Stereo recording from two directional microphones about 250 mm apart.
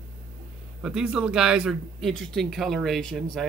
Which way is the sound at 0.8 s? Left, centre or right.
Centre.